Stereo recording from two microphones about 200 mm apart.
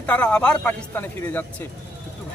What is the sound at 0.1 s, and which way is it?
A man's voice, 5° left (ahead or behind).